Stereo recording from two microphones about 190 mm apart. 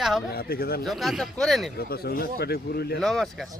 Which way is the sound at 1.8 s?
55° left (ahead or behind).